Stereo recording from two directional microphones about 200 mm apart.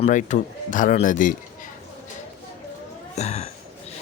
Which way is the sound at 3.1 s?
35° left (ahead or behind).